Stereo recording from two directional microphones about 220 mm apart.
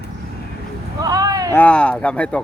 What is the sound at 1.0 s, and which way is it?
Speech, 15° right (ahead or behind).